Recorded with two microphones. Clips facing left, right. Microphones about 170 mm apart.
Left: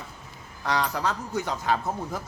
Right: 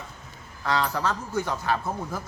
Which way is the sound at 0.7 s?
15° left (ahead or behind).